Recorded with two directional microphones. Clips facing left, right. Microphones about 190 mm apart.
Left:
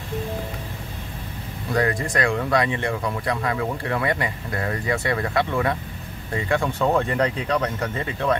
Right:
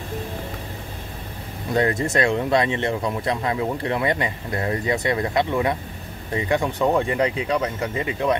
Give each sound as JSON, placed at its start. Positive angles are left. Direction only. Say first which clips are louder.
{"t": 1.7, "sound": "speech", "louder": "right 2 dB", "side_deg": -25}